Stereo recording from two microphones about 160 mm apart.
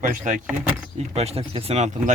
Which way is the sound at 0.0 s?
50° right (ahead or behind).